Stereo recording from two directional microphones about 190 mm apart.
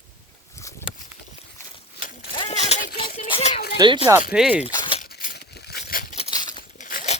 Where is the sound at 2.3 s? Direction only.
30° left (ahead or behind).